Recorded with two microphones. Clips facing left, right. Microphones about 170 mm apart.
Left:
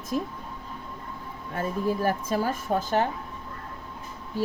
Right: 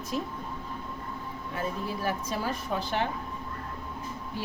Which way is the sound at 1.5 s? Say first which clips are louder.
Left 6 dB; 45° left (ahead or behind).